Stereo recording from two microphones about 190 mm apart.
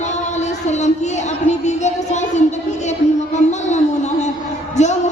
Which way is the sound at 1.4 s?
40° left (ahead or behind).